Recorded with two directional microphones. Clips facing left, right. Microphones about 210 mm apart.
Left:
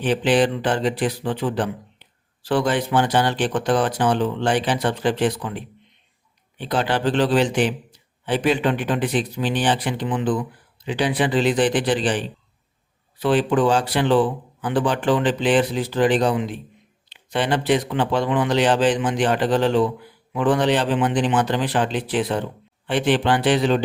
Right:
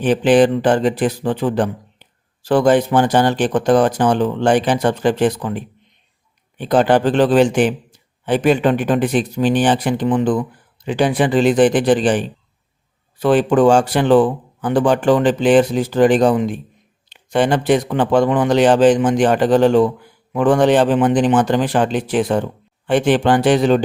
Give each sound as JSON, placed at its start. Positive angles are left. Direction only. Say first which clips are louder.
{"t": 0.0, "sound": "speech", "louder": "right 6 dB", "side_deg": -50}